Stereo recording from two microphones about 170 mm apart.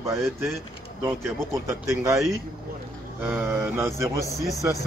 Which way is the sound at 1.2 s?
15° right (ahead or behind).